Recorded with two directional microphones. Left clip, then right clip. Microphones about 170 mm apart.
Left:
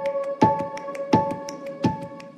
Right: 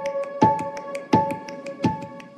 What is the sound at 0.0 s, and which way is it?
Music, centre (ahead or behind).